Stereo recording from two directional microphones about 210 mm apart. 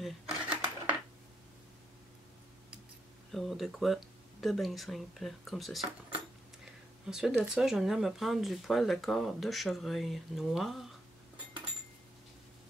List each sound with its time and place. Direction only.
0.0 s dishes: 5° right (ahead or behind)
3.3 s speech: centre (ahead or behind)